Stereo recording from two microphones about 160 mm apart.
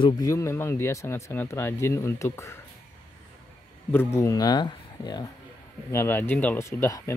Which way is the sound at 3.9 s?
15° left (ahead or behind).